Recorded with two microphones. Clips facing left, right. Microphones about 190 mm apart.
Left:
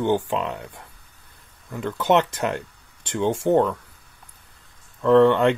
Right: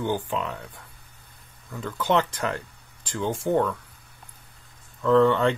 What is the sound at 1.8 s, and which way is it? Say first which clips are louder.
Speech: left 4 dB; 20° left (ahead or behind).